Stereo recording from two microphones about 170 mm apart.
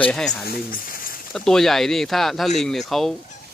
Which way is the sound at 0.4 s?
55° left (ahead or behind).